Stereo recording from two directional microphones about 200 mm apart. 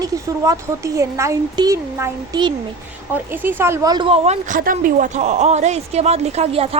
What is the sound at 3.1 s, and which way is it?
A woman's voice, 10° right (ahead or behind).